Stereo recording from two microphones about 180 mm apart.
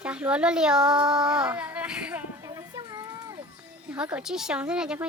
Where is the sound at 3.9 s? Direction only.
5° right (ahead or behind).